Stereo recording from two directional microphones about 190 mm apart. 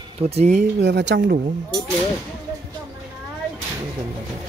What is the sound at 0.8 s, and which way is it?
Speech, 65° right (ahead or behind).